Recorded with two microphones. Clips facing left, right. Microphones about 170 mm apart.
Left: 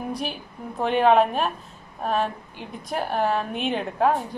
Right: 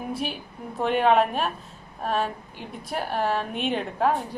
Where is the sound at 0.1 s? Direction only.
Centre (ahead or behind).